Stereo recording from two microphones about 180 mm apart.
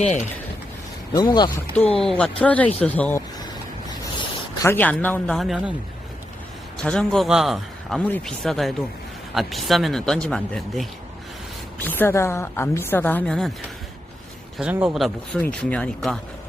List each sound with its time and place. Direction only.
1.1 s speech: 25° left (ahead or behind)
2.0 s a woman's voice: 5° left (ahead or behind)
6.8 s a woman's voice: 5° left (ahead or behind)
14.6 s speech: 10° right (ahead or behind)
14.9 s speech: centre (ahead or behind)